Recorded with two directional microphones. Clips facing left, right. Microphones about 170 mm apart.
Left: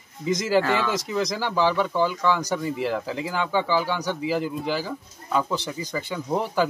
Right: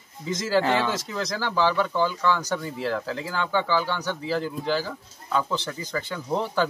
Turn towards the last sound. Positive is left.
turn(degrees=10)  # may be behind; listen again after turning